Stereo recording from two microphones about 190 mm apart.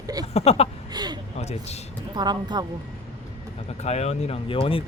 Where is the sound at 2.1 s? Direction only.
20° right (ahead or behind).